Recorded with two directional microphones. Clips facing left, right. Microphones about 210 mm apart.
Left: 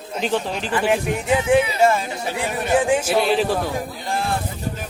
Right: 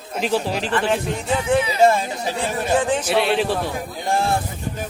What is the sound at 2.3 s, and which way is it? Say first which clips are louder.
Speech: left 1 dB; 15° left (ahead or behind).